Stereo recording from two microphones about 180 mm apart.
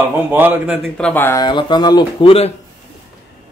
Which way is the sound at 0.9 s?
10° left (ahead or behind).